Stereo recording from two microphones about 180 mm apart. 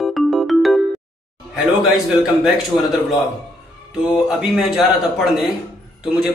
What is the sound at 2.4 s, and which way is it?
Speech, centre (ahead or behind).